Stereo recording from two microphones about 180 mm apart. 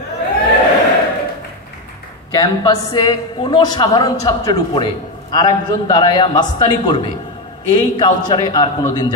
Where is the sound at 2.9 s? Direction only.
25° left (ahead or behind).